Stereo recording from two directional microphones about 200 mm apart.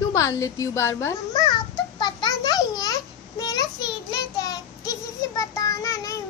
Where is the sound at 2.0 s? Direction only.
20° left (ahead or behind).